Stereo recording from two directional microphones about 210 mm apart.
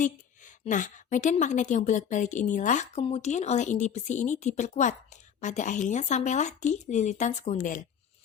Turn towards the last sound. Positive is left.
turn(degrees=40)  # may be behind; listen again after turning